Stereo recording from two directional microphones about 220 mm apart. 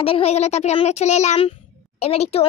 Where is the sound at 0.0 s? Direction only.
25° left (ahead or behind).